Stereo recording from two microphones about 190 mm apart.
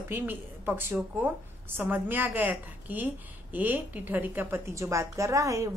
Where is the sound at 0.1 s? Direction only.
10° right (ahead or behind).